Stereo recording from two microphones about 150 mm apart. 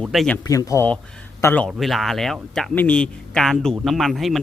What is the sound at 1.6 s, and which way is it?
Speech, centre (ahead or behind).